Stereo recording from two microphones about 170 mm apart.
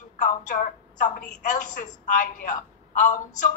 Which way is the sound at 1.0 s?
50° left (ahead or behind).